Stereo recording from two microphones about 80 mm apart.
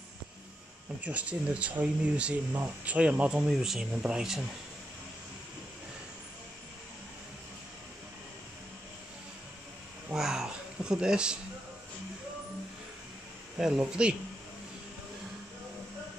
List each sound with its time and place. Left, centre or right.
1.0 s speech: centre
10.1 s a sound: centre
13.6 s speech: centre